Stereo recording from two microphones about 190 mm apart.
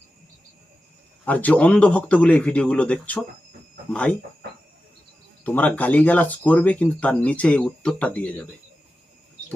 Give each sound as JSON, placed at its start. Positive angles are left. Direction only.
{"t": 1.2, "sound": "speech", "side_deg": 10}
{"t": 5.4, "sound": "speech", "side_deg": 10}